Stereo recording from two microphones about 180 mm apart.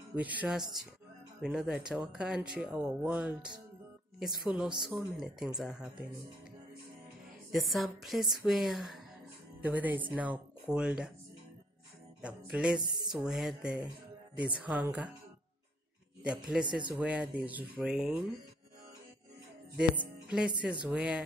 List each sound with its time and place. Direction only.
0.1 s speech: 10° right (ahead or behind)
7.5 s speech: centre (ahead or behind)
12.2 s speech: 5° right (ahead or behind)
12.8 s speech: 25° right (ahead or behind)
13.2 s speech: centre (ahead or behind)
16.3 s speech: 5° right (ahead or behind)
19.8 s music: 5° right (ahead or behind)
20.8 s speech: 5° right (ahead or behind)